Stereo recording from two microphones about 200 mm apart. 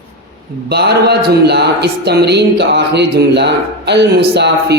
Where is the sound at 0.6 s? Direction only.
55° right (ahead or behind).